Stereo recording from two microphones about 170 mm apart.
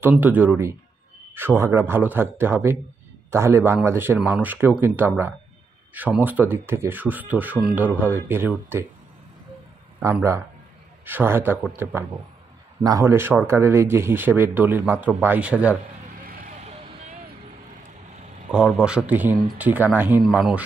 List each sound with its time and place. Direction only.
0.0 s speech: 10° right (ahead or behind)
9.9 s speech: 15° right (ahead or behind)
16.3 s vehicle: 55° right (ahead or behind)
18.5 s a man's voice: 5° right (ahead or behind)
20.2 s a man's voice: centre (ahead or behind)